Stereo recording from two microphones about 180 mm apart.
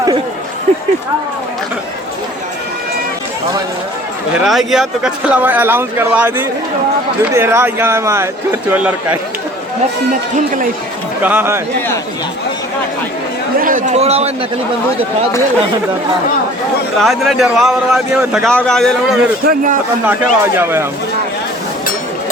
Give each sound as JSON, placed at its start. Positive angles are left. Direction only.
{"t": 4.4, "sound": "speech", "side_deg": 0}
{"t": 10.3, "sound": "a man's voice", "side_deg": -45}
{"t": 11.2, "sound": "speech", "side_deg": -10}
{"t": 13.6, "sound": "a man's voice", "side_deg": -50}
{"t": 17.0, "sound": "speech", "side_deg": 0}
{"t": 19.5, "sound": "a man's voice", "side_deg": -45}
{"t": 20.1, "sound": "speech", "side_deg": -10}